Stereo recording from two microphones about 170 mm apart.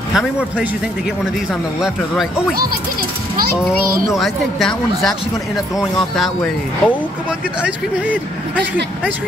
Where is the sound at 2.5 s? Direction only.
60° right (ahead or behind).